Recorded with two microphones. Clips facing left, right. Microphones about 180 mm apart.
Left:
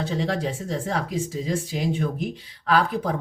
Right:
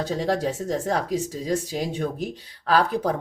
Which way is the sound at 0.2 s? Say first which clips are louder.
Right 2 dB; 40° right (ahead or behind).